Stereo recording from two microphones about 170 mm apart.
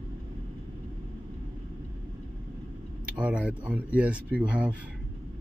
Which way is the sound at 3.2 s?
5° right (ahead or behind).